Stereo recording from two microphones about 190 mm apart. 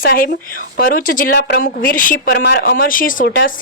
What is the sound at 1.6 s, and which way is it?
Speech, 45° left (ahead or behind).